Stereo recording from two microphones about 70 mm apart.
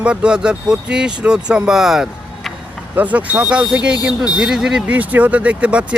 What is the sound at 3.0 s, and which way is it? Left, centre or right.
Speech, right.